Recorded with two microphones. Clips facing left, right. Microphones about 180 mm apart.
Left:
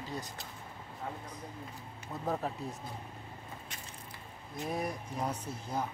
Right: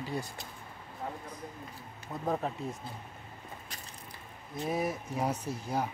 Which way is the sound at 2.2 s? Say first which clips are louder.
Right 2 dB; centre (ahead or behind).